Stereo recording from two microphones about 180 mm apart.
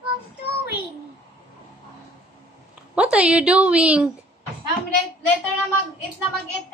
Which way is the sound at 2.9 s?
5° right (ahead or behind).